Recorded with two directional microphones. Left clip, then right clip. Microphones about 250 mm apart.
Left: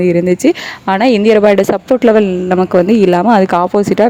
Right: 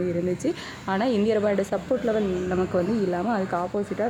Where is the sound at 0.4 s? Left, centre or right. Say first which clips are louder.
Left 16 dB; left.